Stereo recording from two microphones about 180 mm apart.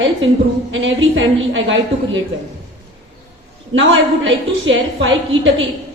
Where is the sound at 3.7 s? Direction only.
90° right.